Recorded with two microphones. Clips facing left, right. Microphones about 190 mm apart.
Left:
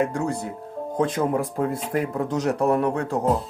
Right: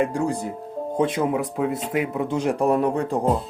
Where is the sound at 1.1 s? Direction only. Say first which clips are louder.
Even; 5° right (ahead or behind).